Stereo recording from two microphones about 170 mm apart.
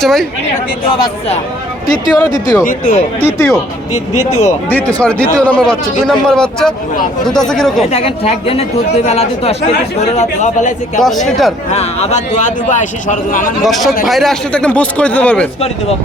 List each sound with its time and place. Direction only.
0.0 s a man's voice: centre (ahead or behind)
0.9 s speech: 30° left (ahead or behind)
1.9 s a man's voice: 20° left (ahead or behind); by 7.9 s 5° left (ahead or behind)
7.9 s a man's voice: 35° left (ahead or behind)
11.0 s a man's voice: centre (ahead or behind)
11.7 s a man's voice: 40° left (ahead or behind)
13.6 s a man's voice: centre (ahead or behind)